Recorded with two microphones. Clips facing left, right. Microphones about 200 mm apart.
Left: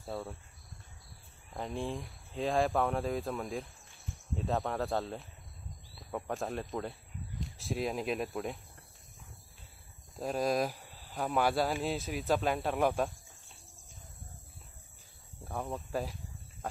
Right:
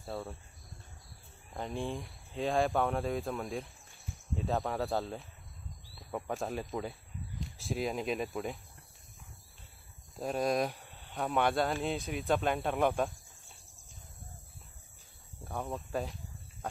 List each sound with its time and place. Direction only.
0.0 s speech: centre (ahead or behind)
1.5 s speech: centre (ahead or behind)
10.1 s speech: centre (ahead or behind)
15.4 s speech: centre (ahead or behind)